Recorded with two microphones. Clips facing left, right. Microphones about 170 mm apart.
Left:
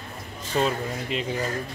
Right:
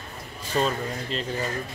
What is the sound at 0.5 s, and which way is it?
Speech, 10° left (ahead or behind).